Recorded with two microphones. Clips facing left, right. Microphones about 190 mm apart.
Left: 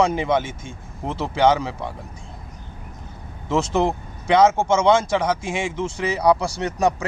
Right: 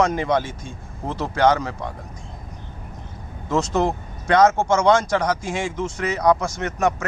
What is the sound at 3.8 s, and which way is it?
Speech, 5° left (ahead or behind).